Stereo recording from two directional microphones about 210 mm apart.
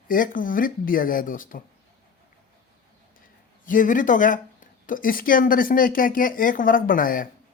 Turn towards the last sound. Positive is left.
turn(degrees=40)  # may be behind; listen again after turning